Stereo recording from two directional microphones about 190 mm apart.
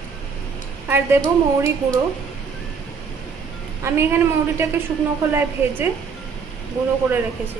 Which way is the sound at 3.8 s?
15° right (ahead or behind).